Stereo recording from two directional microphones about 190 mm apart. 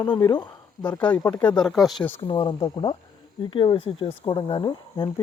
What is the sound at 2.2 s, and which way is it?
Speech, 25° left (ahead or behind).